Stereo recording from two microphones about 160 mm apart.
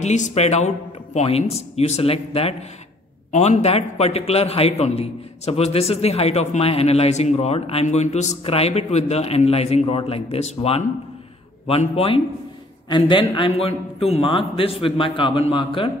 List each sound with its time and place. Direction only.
0.0 s a man's voice: 45° left (ahead or behind)